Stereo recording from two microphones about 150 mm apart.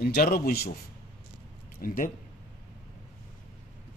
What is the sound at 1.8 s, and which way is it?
Speech, 65° left (ahead or behind).